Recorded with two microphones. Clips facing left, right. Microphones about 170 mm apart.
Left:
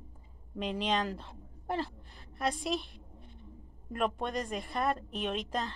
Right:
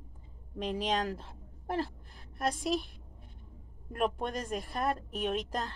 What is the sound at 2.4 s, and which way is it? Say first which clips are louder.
Speech: right 1 dB; centre (ahead or behind).